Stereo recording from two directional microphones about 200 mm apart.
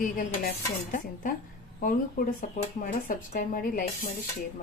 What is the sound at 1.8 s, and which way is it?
A woman's voice, 45° left (ahead or behind).